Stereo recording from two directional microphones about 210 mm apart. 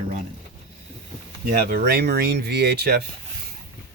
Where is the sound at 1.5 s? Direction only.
45° right (ahead or behind).